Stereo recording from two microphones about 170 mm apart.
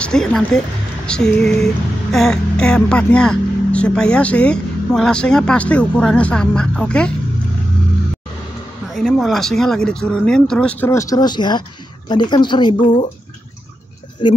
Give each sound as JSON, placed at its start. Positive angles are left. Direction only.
{"t": 0.0, "sound": "speech", "side_deg": 5}
{"t": 8.9, "sound": "speech", "side_deg": 0}
{"t": 14.2, "sound": "speech", "side_deg": 30}